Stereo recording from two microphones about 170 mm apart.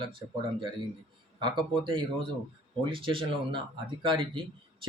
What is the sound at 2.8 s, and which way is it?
Speech, 30° right (ahead or behind).